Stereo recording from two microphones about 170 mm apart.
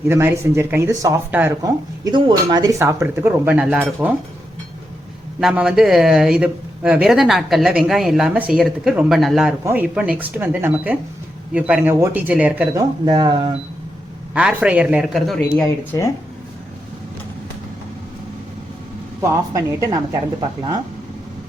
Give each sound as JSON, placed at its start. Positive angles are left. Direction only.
{"t": 0.1, "sound": "speech", "side_deg": -15}
{"t": 5.4, "sound": "a man's voice", "side_deg": -5}
{"t": 12.7, "sound": "speech", "side_deg": -25}
{"t": 14.3, "sound": "speech", "side_deg": -5}
{"t": 15.8, "sound": "speech", "side_deg": 10}
{"t": 19.2, "sound": "speech", "side_deg": -15}